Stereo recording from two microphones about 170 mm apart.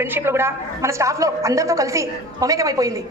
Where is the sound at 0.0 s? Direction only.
15° right (ahead or behind).